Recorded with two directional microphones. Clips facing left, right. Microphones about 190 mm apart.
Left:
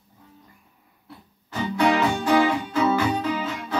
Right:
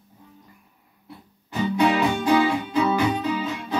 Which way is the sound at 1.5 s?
15° right (ahead or behind).